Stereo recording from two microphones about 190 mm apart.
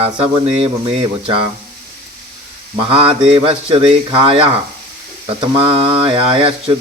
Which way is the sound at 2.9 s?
30° right (ahead or behind).